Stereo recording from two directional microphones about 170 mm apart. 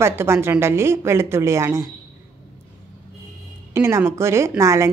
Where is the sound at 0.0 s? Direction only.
15° right (ahead or behind).